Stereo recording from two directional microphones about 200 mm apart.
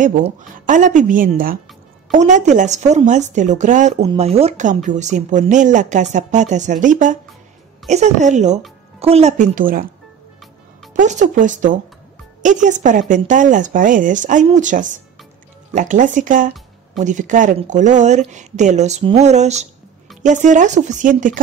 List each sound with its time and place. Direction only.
0.0 s speech: 40° right (ahead or behind)
10.9 s speech: 40° right (ahead or behind)